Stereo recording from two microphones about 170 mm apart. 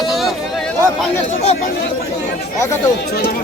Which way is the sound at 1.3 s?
40° left (ahead or behind).